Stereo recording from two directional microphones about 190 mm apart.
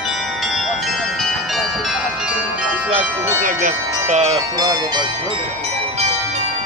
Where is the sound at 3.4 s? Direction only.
45° right (ahead or behind).